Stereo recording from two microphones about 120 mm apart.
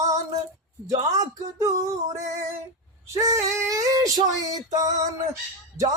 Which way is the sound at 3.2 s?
25° right (ahead or behind).